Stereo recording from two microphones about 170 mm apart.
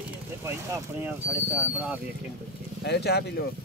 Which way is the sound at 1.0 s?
10° right (ahead or behind).